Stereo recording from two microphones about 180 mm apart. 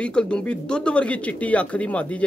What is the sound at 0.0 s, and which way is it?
Speech, 5° left (ahead or behind).